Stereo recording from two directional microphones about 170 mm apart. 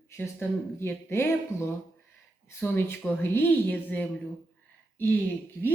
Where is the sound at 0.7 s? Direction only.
15° left (ahead or behind).